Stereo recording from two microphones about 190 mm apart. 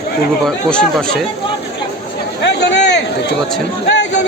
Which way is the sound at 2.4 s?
65° left (ahead or behind).